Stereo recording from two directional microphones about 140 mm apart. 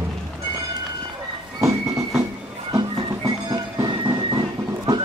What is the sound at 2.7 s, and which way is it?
Music, 25° right (ahead or behind).